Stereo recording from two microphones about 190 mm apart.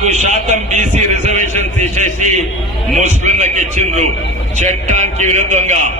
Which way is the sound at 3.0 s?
40° right (ahead or behind).